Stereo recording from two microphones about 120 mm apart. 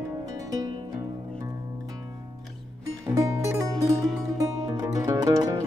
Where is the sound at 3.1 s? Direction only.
25° right (ahead or behind).